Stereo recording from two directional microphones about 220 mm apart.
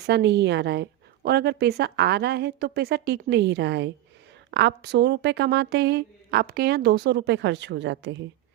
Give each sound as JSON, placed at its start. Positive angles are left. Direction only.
{"t": 0.0, "sound": "a woman's voice", "side_deg": -50}